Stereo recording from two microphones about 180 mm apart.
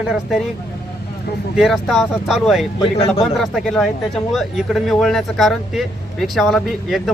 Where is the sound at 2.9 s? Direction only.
30° left (ahead or behind).